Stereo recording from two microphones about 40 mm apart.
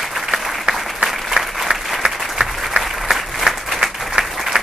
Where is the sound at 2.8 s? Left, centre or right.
Centre.